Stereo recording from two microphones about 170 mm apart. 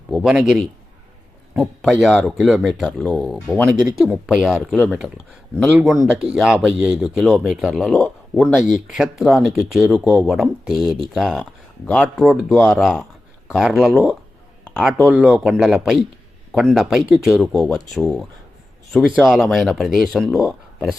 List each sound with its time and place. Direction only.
0.1 s speech: 5° right (ahead or behind)
14.6 s a sound: 5° left (ahead or behind)
15.0 s speech: centre (ahead or behind)